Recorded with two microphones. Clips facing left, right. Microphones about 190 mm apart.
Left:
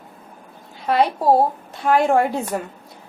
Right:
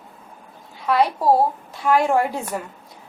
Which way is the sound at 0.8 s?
25° left (ahead or behind).